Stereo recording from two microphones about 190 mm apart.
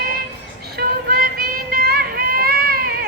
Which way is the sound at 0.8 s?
50° right (ahead or behind).